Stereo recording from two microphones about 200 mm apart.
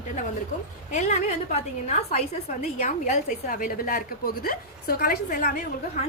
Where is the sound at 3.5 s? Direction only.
45° left (ahead or behind).